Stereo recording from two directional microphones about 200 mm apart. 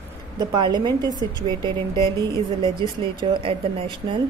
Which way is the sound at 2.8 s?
25° right (ahead or behind).